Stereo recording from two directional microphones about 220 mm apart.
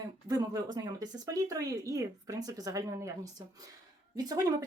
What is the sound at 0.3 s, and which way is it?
Speech, 15° right (ahead or behind).